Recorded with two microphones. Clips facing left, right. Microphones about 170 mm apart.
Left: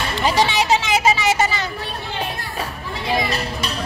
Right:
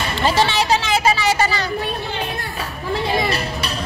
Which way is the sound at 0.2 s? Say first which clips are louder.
Even; 15° left (ahead or behind).